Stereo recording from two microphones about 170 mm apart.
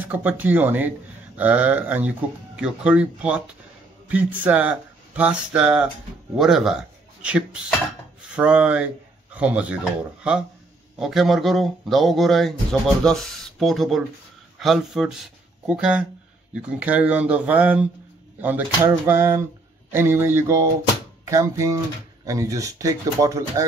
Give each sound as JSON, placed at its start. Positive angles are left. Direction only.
{"t": 0.0, "sound": "speech", "side_deg": -10}
{"t": 11.0, "sound": "speech", "side_deg": 0}